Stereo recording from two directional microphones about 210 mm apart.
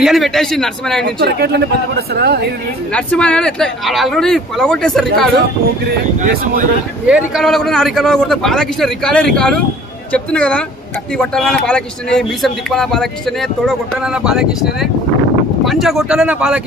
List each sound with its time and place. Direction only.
0.0 s speech: centre (ahead or behind)
1.2 s speech: 50° right (ahead or behind)
2.9 s speech: 5° left (ahead or behind)
6.2 s speech: 40° right (ahead or behind)
7.1 s speech: 5° right (ahead or behind)